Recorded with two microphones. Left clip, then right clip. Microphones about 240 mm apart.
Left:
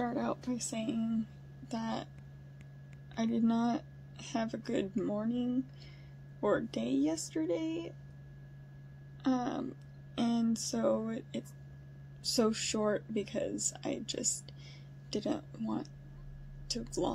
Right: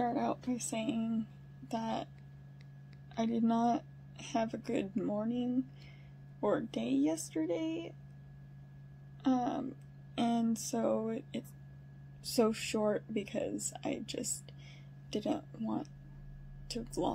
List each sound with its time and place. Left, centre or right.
0.0 s a sound: centre
0.7 s speech: centre
3.2 s speech: centre
9.2 s speech: centre
17.0 s speech: centre